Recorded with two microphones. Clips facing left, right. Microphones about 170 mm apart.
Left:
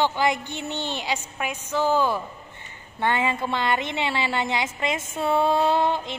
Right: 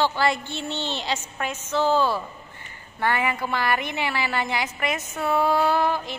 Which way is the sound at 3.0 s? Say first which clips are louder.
Left 1 dB; 20° left (ahead or behind).